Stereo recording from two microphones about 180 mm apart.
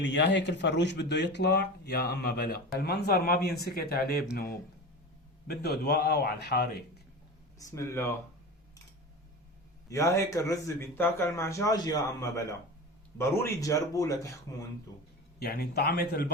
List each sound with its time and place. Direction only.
0.0 s speech: 80° left; by 4.3 s 60° left (ahead or behind)
5.5 s speech: 65° left (ahead or behind)
7.6 s speech: 15° left (ahead or behind)
9.9 s speech: 15° left (ahead or behind)
15.4 s speech: 60° left (ahead or behind)